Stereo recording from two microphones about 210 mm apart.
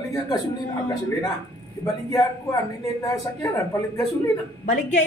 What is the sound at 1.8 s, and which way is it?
Speech, 15° left (ahead or behind).